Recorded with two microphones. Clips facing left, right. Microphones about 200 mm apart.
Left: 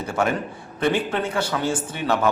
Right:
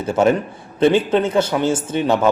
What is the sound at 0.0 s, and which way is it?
A man's voice, 25° right (ahead or behind).